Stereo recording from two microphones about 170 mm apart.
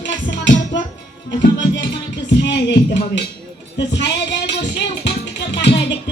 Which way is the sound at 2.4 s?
90° left.